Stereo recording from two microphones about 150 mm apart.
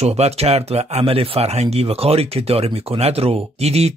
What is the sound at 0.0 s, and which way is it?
Speech, 40° right (ahead or behind).